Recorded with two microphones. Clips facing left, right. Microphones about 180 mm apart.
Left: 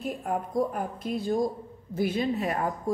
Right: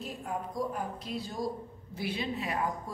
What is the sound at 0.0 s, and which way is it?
A woman's voice, 55° left (ahead or behind).